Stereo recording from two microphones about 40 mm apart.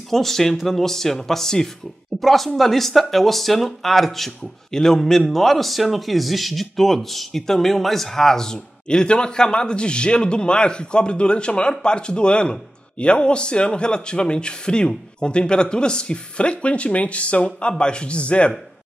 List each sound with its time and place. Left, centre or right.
0.1 s a man's voice: centre; by 18.5 s left